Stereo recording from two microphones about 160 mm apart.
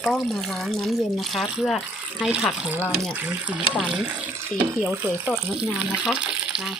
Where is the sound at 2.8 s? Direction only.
5° left (ahead or behind).